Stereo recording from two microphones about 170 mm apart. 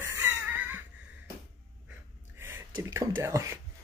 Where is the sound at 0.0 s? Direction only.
15° right (ahead or behind).